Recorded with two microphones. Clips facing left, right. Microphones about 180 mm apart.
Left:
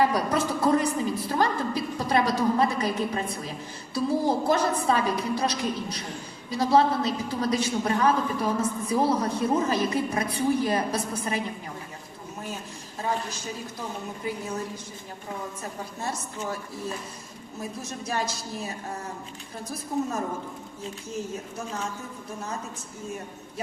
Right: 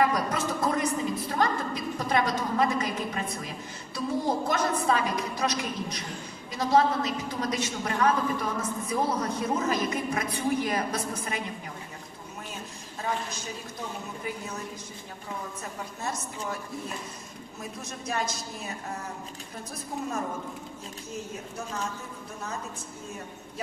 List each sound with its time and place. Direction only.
0.0 s a sound: 30° left (ahead or behind)
3.9 s a woman's voice: 30° left (ahead or behind)
17.6 s a woman's voice: 30° left (ahead or behind)